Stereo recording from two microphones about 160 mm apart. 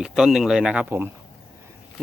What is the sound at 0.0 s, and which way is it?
Speech, 5° right (ahead or behind).